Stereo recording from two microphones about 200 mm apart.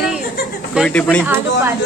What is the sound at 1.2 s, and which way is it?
Speech, 10° right (ahead or behind).